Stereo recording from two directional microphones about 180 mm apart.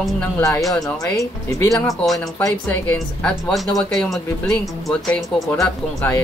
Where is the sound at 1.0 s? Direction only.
20° left (ahead or behind).